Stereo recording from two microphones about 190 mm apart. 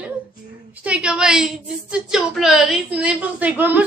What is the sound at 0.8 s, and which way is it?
A woman's voice, 5° right (ahead or behind).